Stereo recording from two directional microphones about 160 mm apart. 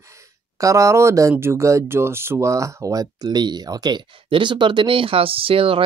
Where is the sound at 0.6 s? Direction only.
20° right (ahead or behind).